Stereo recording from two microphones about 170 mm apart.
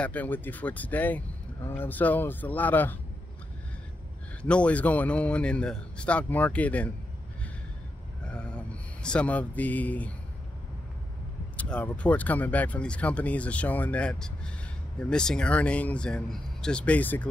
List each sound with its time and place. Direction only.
0.0 s speech: 10° left (ahead or behind)
4.4 s speech: 5° left (ahead or behind)
8.3 s a sound: 5° left (ahead or behind)
11.5 s speech: 5° left (ahead or behind)